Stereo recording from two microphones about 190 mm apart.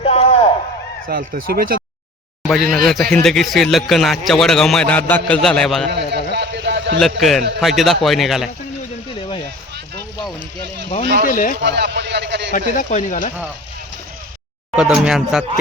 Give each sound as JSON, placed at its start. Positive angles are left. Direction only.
{"t": 0.0, "sound": "a sound", "side_deg": 30}
{"t": 1.0, "sound": "speech", "side_deg": -50}
{"t": 2.7, "sound": "a man's voice", "side_deg": 0}
{"t": 6.0, "sound": "a sound", "side_deg": -60}
{"t": 7.2, "sound": "a man's voice", "side_deg": 0}
{"t": 11.0, "sound": "speech", "side_deg": -60}
{"t": 11.3, "sound": "speech", "side_deg": 45}
{"t": 11.6, "sound": "a man's voice", "side_deg": -65}
{"t": 12.5, "sound": "speech", "side_deg": 40}
{"t": 14.8, "sound": "a man's voice", "side_deg": -5}